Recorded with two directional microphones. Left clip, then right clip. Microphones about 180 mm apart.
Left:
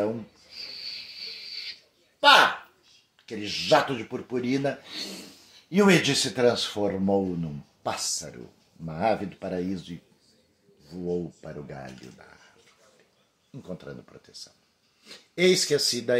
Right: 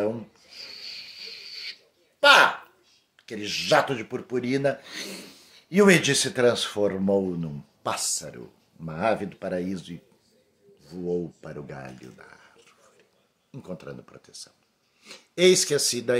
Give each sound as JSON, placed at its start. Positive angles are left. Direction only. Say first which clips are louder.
{"t": 0.0, "sound": "a sound", "louder": "right 1 dB", "side_deg": -10}
{"t": 3.3, "sound": "speech", "louder": "even", "side_deg": -10}
{"t": 13.5, "sound": "speech", "louder": "right 1 dB", "side_deg": -20}